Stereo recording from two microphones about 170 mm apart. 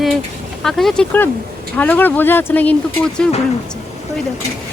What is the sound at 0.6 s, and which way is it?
Speech, centre (ahead or behind).